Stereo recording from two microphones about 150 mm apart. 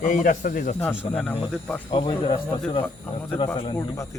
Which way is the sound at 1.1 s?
5° left (ahead or behind).